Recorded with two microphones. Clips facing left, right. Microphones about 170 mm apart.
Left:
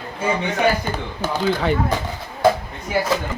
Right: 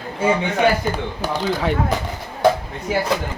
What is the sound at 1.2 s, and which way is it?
Speech, 35° right (ahead or behind).